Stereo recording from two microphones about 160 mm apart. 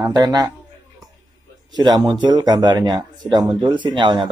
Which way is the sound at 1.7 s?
25° right (ahead or behind).